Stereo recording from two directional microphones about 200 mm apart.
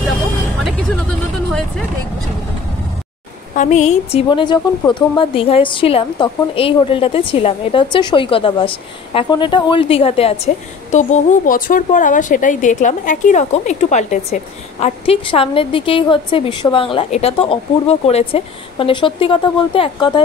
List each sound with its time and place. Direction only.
3.5 s a woman's voice: 40° left (ahead or behind)